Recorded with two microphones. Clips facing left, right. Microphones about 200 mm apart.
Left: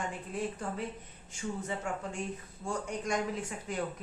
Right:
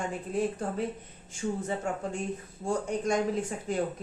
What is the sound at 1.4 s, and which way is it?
Speech, 40° right (ahead or behind).